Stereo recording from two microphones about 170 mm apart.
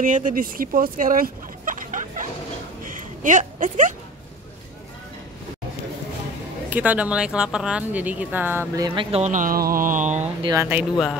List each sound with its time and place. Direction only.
0.0 s speech: 50° right (ahead or behind)
2.8 s a sound: 50° right (ahead or behind)
6.7 s a woman's voice: 10° right (ahead or behind)
9.1 s a sound: 45° right (ahead or behind)
10.4 s speech: 20° right (ahead or behind)
10.7 s speech: 5° right (ahead or behind)